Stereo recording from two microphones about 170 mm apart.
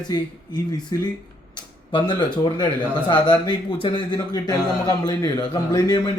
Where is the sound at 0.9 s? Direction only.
20° left (ahead or behind).